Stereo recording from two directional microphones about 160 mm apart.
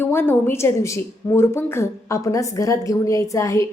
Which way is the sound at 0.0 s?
15° left (ahead or behind).